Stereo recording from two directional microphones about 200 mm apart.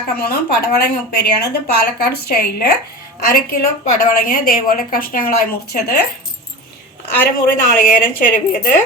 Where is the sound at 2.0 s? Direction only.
50° left (ahead or behind).